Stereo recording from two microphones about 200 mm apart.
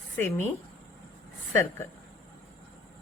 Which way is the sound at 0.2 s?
10° left (ahead or behind).